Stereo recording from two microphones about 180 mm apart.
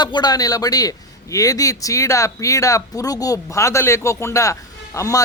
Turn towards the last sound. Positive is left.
turn(degrees=15)  # may be behind; listen again after turning